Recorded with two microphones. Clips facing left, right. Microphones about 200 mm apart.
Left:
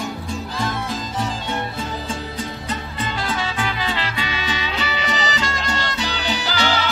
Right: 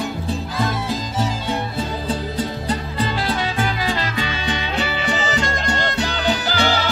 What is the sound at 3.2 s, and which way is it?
Music, 40° right (ahead or behind).